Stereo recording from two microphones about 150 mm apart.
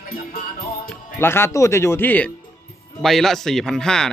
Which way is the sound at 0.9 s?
15° left (ahead or behind).